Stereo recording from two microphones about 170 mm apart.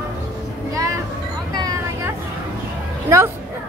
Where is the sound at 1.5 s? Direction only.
20° right (ahead or behind).